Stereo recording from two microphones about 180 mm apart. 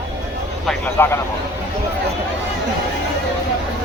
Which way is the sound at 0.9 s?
15° left (ahead or behind).